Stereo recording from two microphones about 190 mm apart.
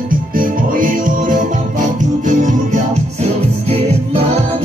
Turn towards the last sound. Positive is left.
turn(degrees=-30)  # may be behind; listen again after turning